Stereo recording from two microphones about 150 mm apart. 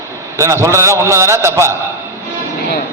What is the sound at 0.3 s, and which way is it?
A man's voice, 20° right (ahead or behind).